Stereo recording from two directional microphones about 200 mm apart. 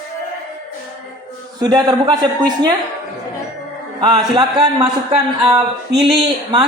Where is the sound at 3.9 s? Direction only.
20° right (ahead or behind).